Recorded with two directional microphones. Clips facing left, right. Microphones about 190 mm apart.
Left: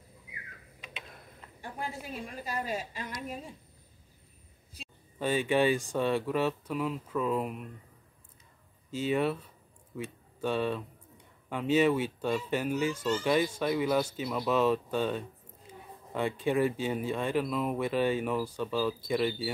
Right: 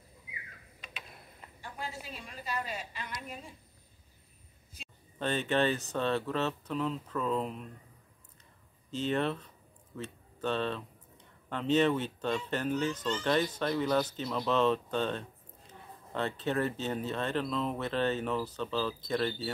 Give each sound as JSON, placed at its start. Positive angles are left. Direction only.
{"t": 1.6, "sound": "a woman's voice", "side_deg": 55}
{"t": 5.2, "sound": "speech", "side_deg": 10}
{"t": 8.9, "sound": "speech", "side_deg": 10}